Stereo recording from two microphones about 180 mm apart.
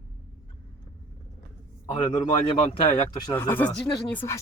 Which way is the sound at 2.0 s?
25° left (ahead or behind).